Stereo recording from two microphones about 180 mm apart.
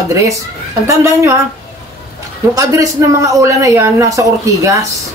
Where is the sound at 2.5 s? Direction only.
20° right (ahead or behind).